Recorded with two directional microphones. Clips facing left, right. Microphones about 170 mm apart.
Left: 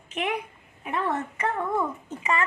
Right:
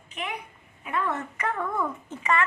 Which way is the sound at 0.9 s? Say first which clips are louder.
Left 1 dB; 30° left (ahead or behind).